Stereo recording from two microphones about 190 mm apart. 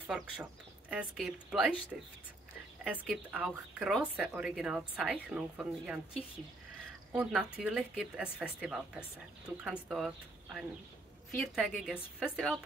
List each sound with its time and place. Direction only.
0.0 s speech: 10° right (ahead or behind)
7.1 s speech: 5° right (ahead or behind)